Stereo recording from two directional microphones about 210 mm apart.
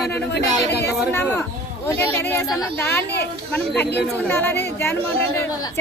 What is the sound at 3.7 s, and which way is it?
Speech, 50° left (ahead or behind).